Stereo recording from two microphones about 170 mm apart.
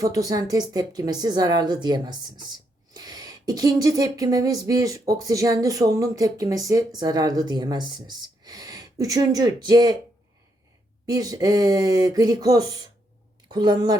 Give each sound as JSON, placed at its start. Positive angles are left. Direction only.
{"t": 0.0, "sound": "a woman's voice", "side_deg": -20}
{"t": 11.0, "sound": "a woman's voice", "side_deg": -20}